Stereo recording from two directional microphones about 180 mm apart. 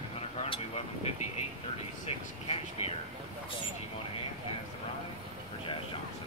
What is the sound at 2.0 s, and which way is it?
Speech, 35° left (ahead or behind).